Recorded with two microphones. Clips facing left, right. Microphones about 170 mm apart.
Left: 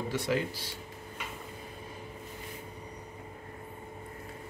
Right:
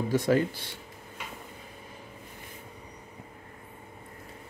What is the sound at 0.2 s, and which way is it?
Speech, 45° right (ahead or behind).